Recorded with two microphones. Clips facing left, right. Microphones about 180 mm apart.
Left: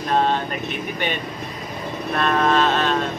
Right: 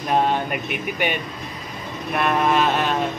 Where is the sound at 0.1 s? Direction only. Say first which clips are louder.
Even; 10° right (ahead or behind).